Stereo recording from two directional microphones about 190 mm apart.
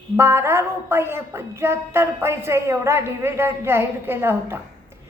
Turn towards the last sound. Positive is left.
turn(degrees=-10)  # may be behind; listen again after turning